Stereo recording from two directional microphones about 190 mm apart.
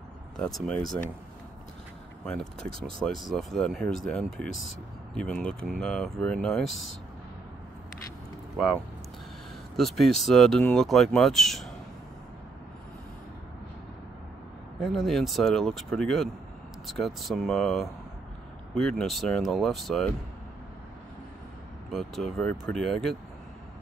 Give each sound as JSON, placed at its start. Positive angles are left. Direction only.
{"t": 0.4, "sound": "speech", "side_deg": 0}
{"t": 3.2, "sound": "speech", "side_deg": 0}
{"t": 8.6, "sound": "speech", "side_deg": 0}
{"t": 9.8, "sound": "speech", "side_deg": 0}
{"t": 14.8, "sound": "speech", "side_deg": 0}
{"t": 21.9, "sound": "speech", "side_deg": 0}